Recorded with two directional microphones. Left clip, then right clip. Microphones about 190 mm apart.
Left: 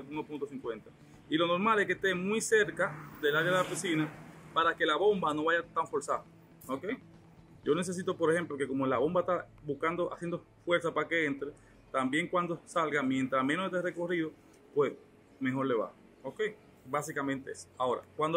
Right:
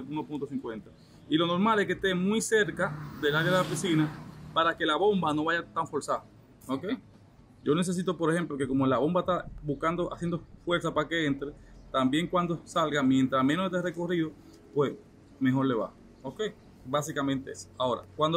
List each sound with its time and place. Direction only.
0.1 s speech: centre (ahead or behind)
1.3 s speech: 20° right (ahead or behind)
15.4 s speech: 25° right (ahead or behind)
16.9 s speech: 20° right (ahead or behind)